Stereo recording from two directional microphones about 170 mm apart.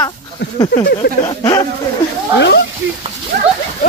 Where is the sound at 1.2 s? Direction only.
25° left (ahead or behind).